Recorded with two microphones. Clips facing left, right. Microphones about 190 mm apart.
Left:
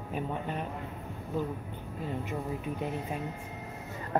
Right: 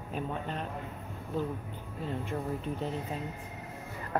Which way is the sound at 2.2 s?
10° left (ahead or behind).